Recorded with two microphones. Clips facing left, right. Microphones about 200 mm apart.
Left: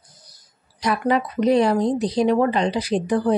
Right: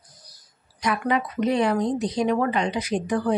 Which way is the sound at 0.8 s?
35° left (ahead or behind).